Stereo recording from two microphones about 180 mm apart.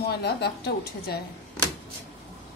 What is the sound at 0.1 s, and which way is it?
A woman's voice, 65° left (ahead or behind).